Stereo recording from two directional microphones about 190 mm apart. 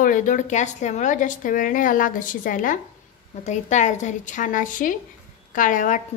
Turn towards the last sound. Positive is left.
turn(degrees=40)  # may be behind; listen again after turning